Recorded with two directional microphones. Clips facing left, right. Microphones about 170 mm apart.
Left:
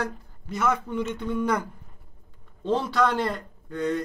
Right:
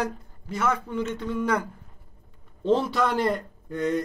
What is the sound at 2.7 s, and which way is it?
A man's voice, 15° right (ahead or behind).